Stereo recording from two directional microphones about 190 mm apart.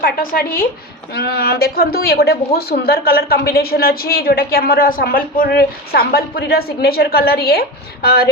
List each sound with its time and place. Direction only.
0.0 s a woman's voice: 50° left (ahead or behind)